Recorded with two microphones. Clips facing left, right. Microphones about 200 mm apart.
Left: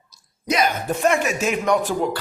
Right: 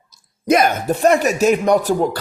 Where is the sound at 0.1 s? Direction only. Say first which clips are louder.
Right 9 dB; 50° right (ahead or behind).